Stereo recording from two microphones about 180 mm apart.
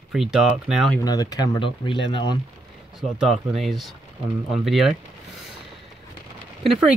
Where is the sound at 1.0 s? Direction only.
20° left (ahead or behind).